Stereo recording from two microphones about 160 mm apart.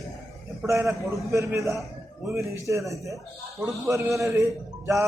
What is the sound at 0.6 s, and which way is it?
A man's voice, 20° right (ahead or behind).